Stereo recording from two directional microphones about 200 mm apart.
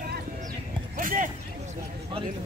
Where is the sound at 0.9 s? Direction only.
45° right (ahead or behind).